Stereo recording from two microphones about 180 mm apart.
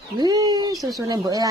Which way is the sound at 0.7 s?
Centre (ahead or behind).